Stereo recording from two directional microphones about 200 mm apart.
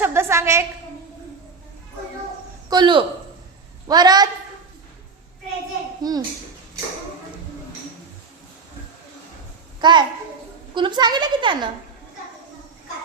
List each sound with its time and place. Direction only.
0.0 s a woman's voice: 15° right (ahead or behind)
2.6 s a woman's voice: 20° right (ahead or behind)
6.0 s a child's voice: 20° right (ahead or behind)
9.8 s a woman's voice: 20° right (ahead or behind)